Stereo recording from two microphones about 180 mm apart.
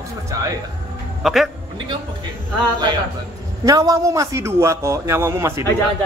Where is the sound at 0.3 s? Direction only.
20° right (ahead or behind).